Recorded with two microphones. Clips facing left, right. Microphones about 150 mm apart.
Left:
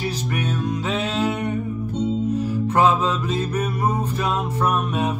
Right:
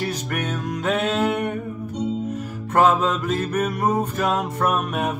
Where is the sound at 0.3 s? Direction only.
55° right (ahead or behind).